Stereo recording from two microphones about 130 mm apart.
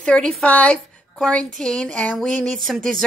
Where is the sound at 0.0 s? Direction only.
5° left (ahead or behind).